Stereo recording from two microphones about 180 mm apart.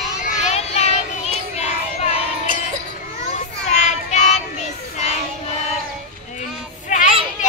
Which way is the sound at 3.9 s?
40° left (ahead or behind).